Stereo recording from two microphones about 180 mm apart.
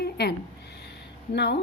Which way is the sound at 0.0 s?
60° left (ahead or behind).